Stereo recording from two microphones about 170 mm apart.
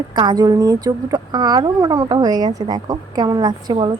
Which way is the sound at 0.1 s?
25° right (ahead or behind).